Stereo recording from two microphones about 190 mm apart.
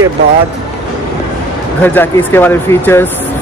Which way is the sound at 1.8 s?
10° left (ahead or behind).